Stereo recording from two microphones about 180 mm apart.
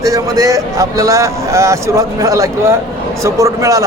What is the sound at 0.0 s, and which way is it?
Speech, 20° right (ahead or behind).